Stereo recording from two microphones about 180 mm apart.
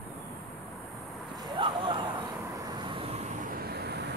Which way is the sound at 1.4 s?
25° right (ahead or behind).